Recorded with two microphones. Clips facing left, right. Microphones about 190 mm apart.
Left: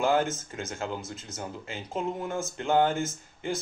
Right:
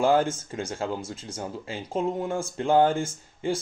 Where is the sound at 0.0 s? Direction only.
30° right (ahead or behind).